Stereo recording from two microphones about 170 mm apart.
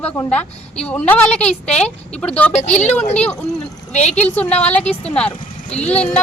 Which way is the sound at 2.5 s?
40° left (ahead or behind).